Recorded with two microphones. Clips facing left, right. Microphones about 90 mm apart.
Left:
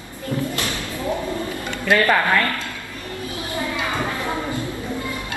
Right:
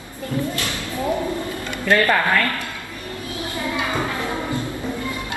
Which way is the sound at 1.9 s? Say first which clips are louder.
Even; 15° left (ahead or behind).